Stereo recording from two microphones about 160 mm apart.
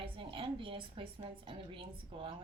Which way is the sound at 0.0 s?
35° right (ahead or behind).